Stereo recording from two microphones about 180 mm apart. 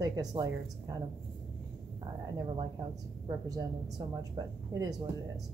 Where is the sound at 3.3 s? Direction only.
20° right (ahead or behind).